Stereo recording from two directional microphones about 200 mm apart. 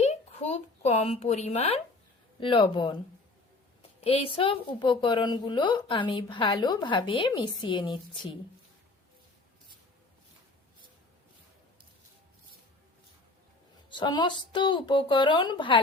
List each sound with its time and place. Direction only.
0.0 s a woman's voice: 35° left (ahead or behind)
4.0 s a woman's voice: 30° left (ahead or behind)
13.9 s a woman's voice: 20° left (ahead or behind)